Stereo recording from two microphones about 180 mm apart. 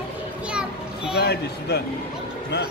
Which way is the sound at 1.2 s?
65° left (ahead or behind).